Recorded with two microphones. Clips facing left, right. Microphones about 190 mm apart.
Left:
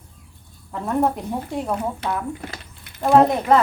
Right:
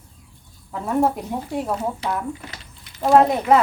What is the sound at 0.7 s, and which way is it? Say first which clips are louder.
Speech: right 1 dB; centre (ahead or behind).